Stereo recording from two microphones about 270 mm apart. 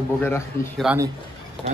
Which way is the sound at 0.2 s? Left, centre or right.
Centre.